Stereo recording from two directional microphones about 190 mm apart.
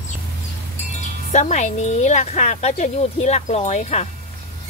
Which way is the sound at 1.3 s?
40° left (ahead or behind).